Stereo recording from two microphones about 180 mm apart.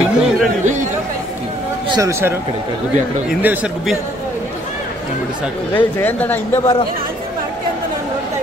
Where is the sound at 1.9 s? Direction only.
15° right (ahead or behind).